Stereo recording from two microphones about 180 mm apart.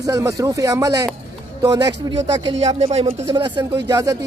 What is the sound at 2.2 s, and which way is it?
Speech, 35° right (ahead or behind).